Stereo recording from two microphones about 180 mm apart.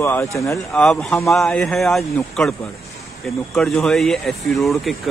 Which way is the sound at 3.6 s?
Centre (ahead or behind).